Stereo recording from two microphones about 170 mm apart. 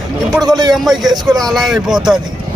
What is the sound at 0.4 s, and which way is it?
Speech, 20° right (ahead or behind).